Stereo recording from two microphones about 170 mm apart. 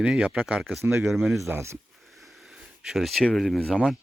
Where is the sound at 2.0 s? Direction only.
Centre (ahead or behind).